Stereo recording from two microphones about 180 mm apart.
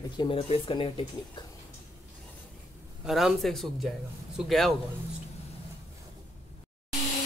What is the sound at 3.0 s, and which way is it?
Speech, centre (ahead or behind).